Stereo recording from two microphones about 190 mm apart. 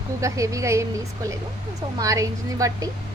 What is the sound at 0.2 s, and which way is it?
A woman's voice, 15° right (ahead or behind).